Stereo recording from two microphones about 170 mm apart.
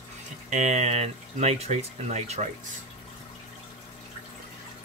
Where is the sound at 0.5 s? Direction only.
45° right (ahead or behind).